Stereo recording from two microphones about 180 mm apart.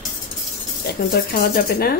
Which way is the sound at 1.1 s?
55° left (ahead or behind).